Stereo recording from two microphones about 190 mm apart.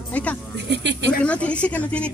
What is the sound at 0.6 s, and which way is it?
Speech, 65° right (ahead or behind).